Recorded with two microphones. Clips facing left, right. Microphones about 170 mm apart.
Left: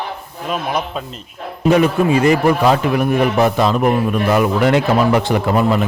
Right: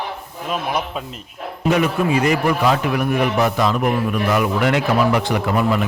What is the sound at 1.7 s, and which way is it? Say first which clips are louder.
A man's voice: left 4 dB; 30° left (ahead or behind).